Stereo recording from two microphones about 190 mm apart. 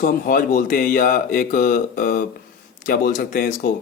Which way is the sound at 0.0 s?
50° left (ahead or behind).